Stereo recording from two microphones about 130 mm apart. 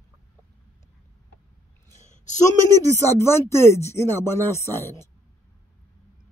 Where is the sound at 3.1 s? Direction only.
20° left (ahead or behind).